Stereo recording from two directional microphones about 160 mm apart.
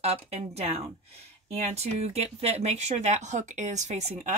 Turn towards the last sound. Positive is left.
turn(degrees=-45)  # may be behind; listen again after turning